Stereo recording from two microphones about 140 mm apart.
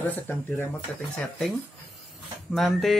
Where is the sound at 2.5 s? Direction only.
Centre (ahead or behind).